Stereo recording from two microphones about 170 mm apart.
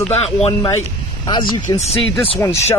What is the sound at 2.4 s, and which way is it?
Speech, 15° left (ahead or behind).